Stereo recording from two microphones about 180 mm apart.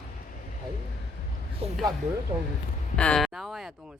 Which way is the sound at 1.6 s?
35° right (ahead or behind).